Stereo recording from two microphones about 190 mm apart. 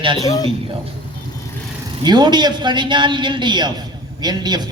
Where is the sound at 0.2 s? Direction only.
20° left (ahead or behind).